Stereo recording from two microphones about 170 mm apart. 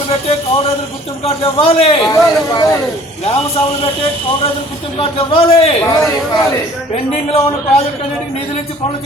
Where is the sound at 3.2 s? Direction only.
35° left (ahead or behind).